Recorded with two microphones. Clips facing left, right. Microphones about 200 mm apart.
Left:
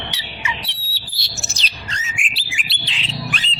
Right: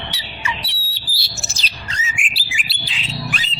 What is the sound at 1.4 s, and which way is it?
Bird, centre (ahead or behind).